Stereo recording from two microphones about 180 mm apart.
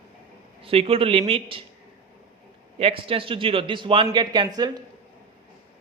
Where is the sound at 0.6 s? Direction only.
30° right (ahead or behind).